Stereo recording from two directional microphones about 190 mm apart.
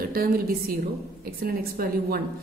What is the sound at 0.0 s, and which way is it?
A woman's voice, 50° right (ahead or behind).